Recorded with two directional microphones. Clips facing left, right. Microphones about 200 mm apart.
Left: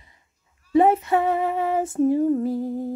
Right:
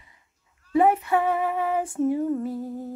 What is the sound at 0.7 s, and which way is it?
Female singing, 30° left (ahead or behind).